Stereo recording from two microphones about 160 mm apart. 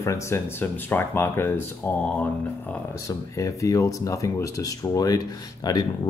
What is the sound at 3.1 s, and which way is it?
Speech, 20° left (ahead or behind).